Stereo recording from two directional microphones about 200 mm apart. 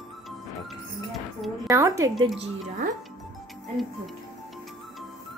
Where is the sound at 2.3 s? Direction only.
40° right (ahead or behind).